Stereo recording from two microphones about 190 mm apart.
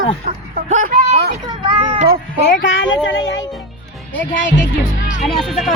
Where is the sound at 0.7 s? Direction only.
40° right (ahead or behind).